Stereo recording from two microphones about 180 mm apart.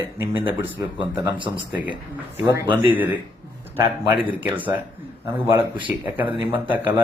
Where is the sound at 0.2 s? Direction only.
10° right (ahead or behind).